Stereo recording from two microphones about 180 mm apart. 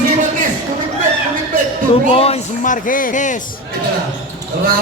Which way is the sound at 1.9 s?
30° left (ahead or behind).